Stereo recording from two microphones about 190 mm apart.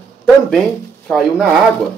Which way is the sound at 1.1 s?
Centre (ahead or behind).